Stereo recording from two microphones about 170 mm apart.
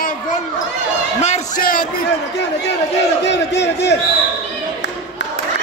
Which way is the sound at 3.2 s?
90° left.